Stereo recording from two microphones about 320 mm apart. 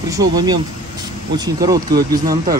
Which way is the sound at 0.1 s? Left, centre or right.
Centre.